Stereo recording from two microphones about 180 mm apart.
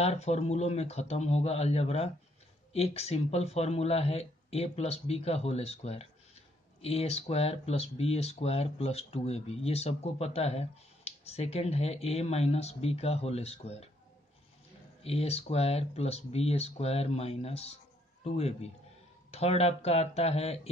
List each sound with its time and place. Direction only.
0.0 s speech: 35° left (ahead or behind)
15.0 s speech: 35° left (ahead or behind)